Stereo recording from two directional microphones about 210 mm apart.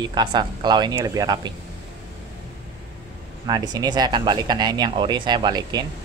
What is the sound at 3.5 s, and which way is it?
Speech, 20° right (ahead or behind).